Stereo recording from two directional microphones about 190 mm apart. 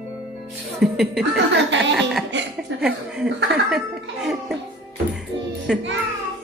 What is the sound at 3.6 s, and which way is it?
Speech, centre (ahead or behind).